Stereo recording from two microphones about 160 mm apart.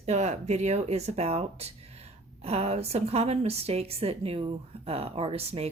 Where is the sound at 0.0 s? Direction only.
45° right (ahead or behind).